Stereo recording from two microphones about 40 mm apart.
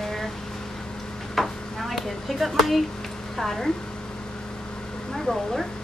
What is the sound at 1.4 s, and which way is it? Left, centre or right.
Stir, centre.